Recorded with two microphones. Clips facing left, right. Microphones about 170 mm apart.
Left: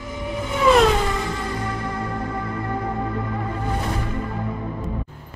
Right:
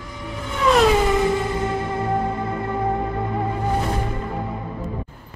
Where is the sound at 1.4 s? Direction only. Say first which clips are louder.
Right 4 dB; 25° right (ahead or behind).